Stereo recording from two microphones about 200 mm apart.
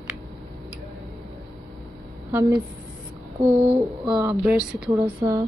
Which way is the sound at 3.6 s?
30° right (ahead or behind).